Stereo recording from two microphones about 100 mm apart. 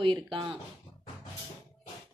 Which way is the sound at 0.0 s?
55° right (ahead or behind).